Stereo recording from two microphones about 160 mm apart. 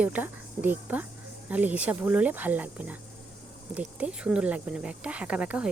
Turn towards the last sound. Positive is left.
turn(degrees=-5)  # may be behind; listen again after turning